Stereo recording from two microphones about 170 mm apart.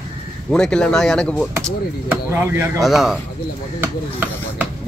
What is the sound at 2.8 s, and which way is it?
Speech, centre (ahead or behind).